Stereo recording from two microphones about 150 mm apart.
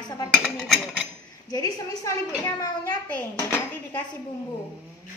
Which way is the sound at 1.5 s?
25° left (ahead or behind).